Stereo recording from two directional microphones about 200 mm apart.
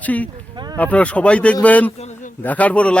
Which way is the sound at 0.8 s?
5° left (ahead or behind).